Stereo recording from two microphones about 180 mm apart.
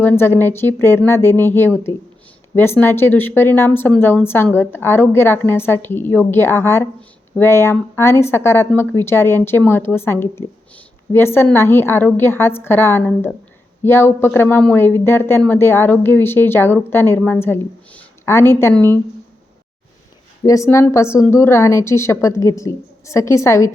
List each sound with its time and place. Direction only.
0.0 s speech: 10° left (ahead or behind)
20.4 s speech: 15° left (ahead or behind)